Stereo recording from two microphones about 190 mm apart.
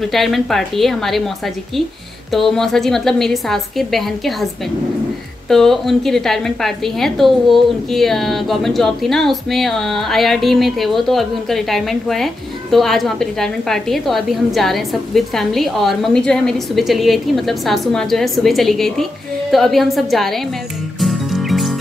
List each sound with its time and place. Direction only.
0.0 s a woman's voice: centre (ahead or behind)
5.5 s a woman's voice: centre (ahead or behind)
21.0 s music: centre (ahead or behind)